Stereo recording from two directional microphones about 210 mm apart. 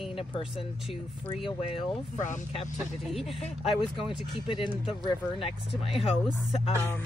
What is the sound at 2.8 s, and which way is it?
Speech, centre (ahead or behind).